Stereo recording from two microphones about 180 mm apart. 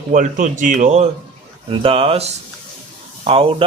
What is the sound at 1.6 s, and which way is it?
Speech, 30° right (ahead or behind).